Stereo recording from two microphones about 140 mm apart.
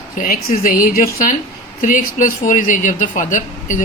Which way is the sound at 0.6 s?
85° left.